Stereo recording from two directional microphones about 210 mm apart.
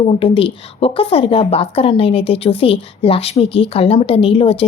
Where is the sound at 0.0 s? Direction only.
25° left (ahead or behind).